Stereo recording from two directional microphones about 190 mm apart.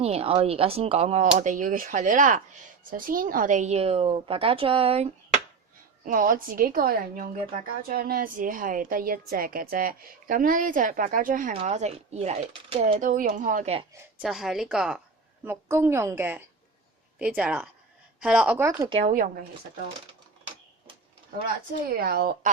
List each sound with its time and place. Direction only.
0.0 s speech: 30° right (ahead or behind)
6.1 s speech: 45° right (ahead or behind)
11.5 s speech: 35° right (ahead or behind)
14.2 s a woman's voice: centre (ahead or behind); by 18.9 s 15° right (ahead or behind)
21.8 s speech: 50° right (ahead or behind)